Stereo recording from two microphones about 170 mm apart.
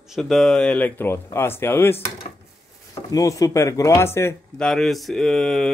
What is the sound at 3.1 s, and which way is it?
Speech, 20° left (ahead or behind).